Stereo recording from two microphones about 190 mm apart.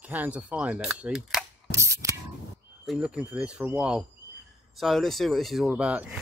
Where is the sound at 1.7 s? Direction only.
15° right (ahead or behind).